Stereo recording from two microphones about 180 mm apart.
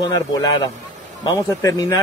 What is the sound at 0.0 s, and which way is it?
Speech, 20° left (ahead or behind).